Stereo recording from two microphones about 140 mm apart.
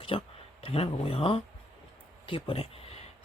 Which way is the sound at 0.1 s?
35° left (ahead or behind).